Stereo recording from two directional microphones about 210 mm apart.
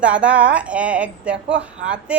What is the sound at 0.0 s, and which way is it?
A woman's voice, 5° right (ahead or behind).